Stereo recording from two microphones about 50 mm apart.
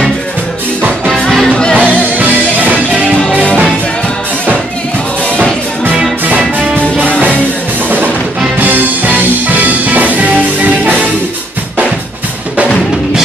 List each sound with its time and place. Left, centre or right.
1.1 s music: centre
1.5 s music: centre
2.1 s music: right
8.5 s music: right